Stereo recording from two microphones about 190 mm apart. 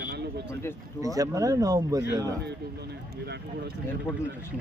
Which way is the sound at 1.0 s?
20° right (ahead or behind).